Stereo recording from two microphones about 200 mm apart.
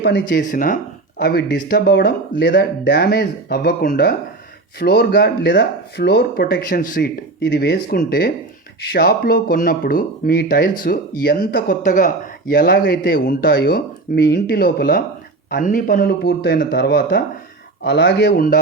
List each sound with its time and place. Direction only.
0.0 s a man's voice: 55° left (ahead or behind)
0.5 s a man's voice: 40° left (ahead or behind)